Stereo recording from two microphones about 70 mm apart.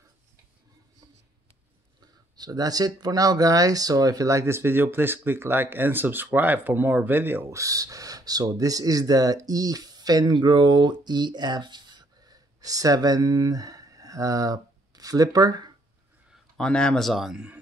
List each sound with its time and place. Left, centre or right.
2.3 s speech: right
7.4 s speech: right
16.5 s speech: centre